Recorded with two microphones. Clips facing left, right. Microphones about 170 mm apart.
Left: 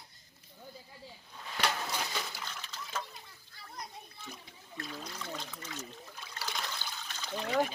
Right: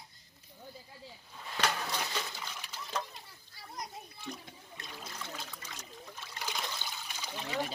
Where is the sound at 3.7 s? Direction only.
10° right (ahead or behind).